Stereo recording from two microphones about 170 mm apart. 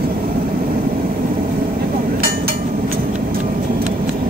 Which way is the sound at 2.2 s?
60° right (ahead or behind).